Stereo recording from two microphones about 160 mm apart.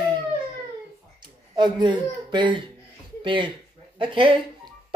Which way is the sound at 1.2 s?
25° right (ahead or behind).